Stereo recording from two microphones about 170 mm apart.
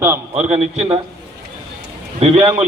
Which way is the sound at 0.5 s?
35° right (ahead or behind).